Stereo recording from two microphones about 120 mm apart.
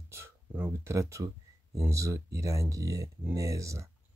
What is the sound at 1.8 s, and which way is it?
Speech, 25° right (ahead or behind).